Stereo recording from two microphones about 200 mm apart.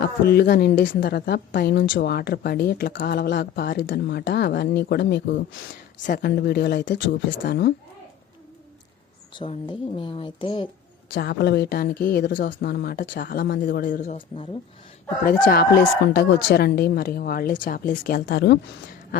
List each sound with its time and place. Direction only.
0.0 s a woman's voice: 50° left (ahead or behind)
6.1 s speech: 50° left (ahead or behind)
9.3 s speech: 25° left (ahead or behind)
11.1 s a woman's voice: 55° left (ahead or behind)
14.2 s speech: 25° left (ahead or behind)
15.2 s a woman's voice: 45° left (ahead or behind)